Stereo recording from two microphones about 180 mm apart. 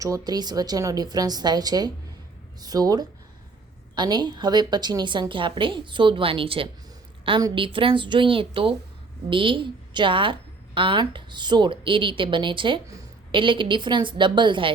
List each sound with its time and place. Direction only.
0.0 s a woman's voice: 20° right (ahead or behind)